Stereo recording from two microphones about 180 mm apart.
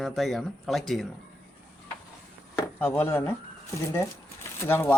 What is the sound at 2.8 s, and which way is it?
Speech, 10° left (ahead or behind).